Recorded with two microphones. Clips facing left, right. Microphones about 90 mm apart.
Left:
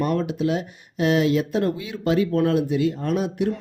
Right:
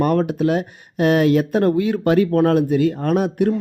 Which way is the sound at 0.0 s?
50° right (ahead or behind).